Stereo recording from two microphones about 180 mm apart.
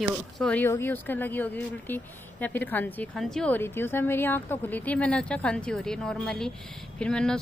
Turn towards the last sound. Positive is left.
turn(degrees=5)  # may be behind; listen again after turning